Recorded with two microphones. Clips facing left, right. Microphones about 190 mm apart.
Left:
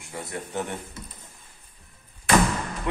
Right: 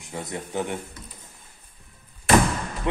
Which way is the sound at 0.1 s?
20° right (ahead or behind).